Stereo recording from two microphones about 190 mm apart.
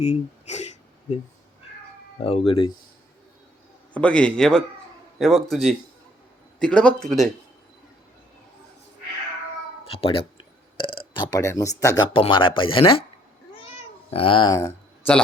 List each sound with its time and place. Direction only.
0.0 s a sound: 35° left (ahead or behind)
2.2 s speech: 30° left (ahead or behind)
3.9 s a man's voice: 5° left (ahead or behind)
9.9 s speech: 30° left (ahead or behind)
10.8 s burping: 30° left (ahead or behind)
11.8 s speech: 20° left (ahead or behind)
14.1 s speech: 30° left (ahead or behind)